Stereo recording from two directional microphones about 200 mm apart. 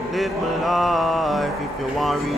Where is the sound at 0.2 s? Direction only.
Centre (ahead or behind).